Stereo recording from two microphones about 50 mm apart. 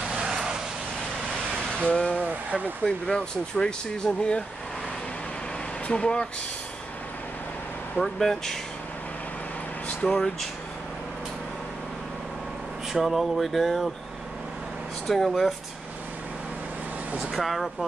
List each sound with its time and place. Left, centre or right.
0.0 s vehicle: centre
1.5 s a sound: left
2.1 s speech: right
2.8 s speech: centre
5.9 s speech: centre
7.9 s speech: centre
9.8 s speech: centre
12.9 s speech: centre
15.0 s speech: centre
17.4 s speech: centre